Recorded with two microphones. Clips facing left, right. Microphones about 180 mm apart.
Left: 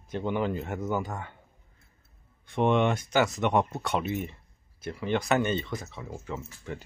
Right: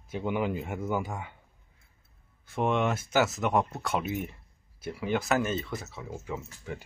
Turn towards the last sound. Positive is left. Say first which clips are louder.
# even
turn(degrees=-10)  # may be behind; listen again after turning